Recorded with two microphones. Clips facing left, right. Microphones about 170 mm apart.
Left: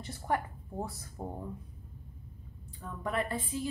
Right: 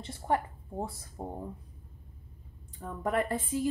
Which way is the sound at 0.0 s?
25° right (ahead or behind).